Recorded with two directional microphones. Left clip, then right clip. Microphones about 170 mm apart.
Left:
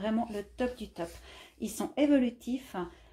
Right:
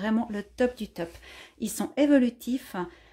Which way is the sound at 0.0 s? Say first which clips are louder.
Right 3 dB; 45° right (ahead or behind).